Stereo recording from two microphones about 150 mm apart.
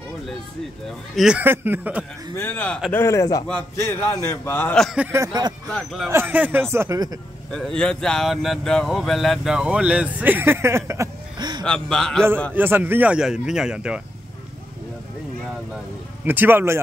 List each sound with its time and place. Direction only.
0.8 s speech: centre (ahead or behind)
2.3 s a man's voice: 10° left (ahead or behind)
4.8 s speech: 5° right (ahead or behind)
5.1 s speech: 25° right (ahead or behind)
5.7 s speech: 5° left (ahead or behind)
6.0 s speech: 15° right (ahead or behind)
7.5 s speech: 5° left (ahead or behind); by 11.1 s 20° right (ahead or behind)
11.3 s a sound: 30° right (ahead or behind)
11.6 s speech: 5° left (ahead or behind)
12.5 s speech: 15° right (ahead or behind)
16.3 s speech: 15° right (ahead or behind)